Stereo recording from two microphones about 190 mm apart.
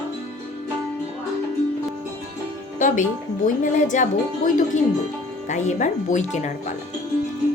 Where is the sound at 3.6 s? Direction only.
40° left (ahead or behind).